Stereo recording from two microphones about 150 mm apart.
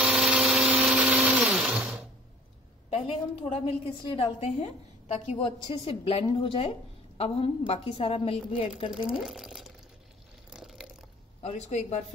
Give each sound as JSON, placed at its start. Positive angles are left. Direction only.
{"t": 0.0, "sound": "blender", "side_deg": -5}
{"t": 3.6, "sound": "a woman's voice", "side_deg": 40}
{"t": 8.9, "sound": "speech", "side_deg": -5}
{"t": 10.5, "sound": "a sound", "side_deg": 0}
{"t": 11.4, "sound": "speech", "side_deg": 45}